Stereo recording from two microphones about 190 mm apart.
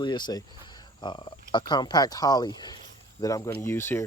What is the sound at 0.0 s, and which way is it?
Speech, 25° left (ahead or behind).